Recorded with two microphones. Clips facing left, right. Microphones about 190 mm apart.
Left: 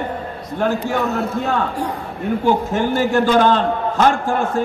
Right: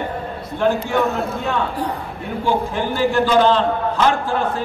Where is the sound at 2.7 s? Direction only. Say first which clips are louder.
Left 2 dB; 45° left (ahead or behind).